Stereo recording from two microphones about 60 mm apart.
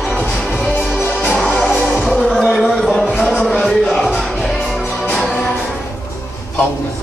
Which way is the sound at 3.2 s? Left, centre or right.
Centre.